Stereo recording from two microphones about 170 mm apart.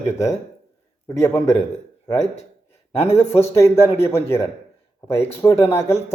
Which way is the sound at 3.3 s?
15° left (ahead or behind).